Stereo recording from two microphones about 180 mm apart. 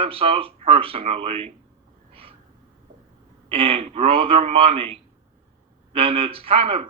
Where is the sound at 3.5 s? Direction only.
35° right (ahead or behind).